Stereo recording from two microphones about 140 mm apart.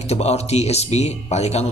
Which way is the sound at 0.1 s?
50° left (ahead or behind).